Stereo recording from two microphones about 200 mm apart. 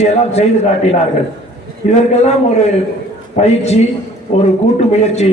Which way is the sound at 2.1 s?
35° left (ahead or behind).